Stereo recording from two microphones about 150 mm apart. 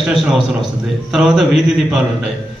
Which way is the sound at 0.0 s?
Centre (ahead or behind).